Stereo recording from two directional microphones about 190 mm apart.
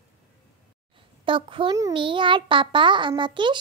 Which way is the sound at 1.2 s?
25° right (ahead or behind).